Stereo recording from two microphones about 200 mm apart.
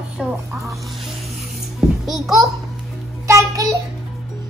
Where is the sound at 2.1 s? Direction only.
Centre (ahead or behind).